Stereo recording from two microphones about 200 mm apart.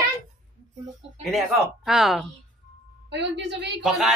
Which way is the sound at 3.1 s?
60° right (ahead or behind).